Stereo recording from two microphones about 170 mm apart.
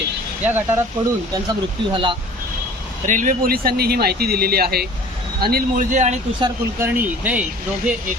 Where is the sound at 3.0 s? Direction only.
50° right (ahead or behind); by 4.8 s 65° right (ahead or behind).